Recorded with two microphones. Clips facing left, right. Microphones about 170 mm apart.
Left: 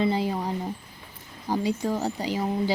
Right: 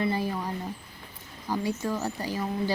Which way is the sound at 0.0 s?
20° left (ahead or behind).